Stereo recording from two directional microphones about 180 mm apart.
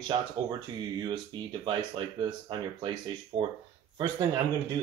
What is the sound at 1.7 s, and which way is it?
Speech, 25° right (ahead or behind).